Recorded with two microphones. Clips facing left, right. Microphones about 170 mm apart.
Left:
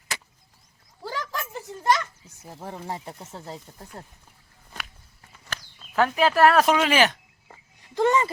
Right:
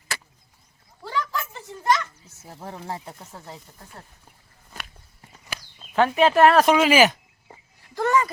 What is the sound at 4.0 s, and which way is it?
Speech, 35° left (ahead or behind).